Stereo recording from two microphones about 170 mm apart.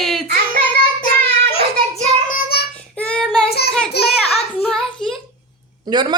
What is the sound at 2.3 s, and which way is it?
Child singing, 65° left (ahead or behind).